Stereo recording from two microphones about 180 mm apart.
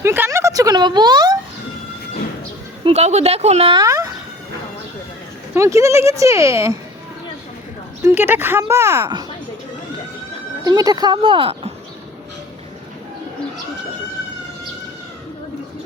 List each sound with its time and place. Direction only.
0.0 s a sound: 15° right (ahead or behind)
2.8 s speech: 35° right (ahead or behind); by 4.1 s 20° right (ahead or behind)
5.5 s speech: 15° right (ahead or behind)
8.0 s speech: 10° right (ahead or behind)
10.6 s speech: 20° right (ahead or behind)